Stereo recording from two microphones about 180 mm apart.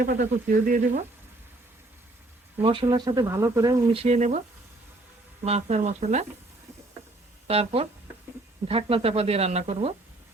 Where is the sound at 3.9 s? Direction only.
35° right (ahead or behind).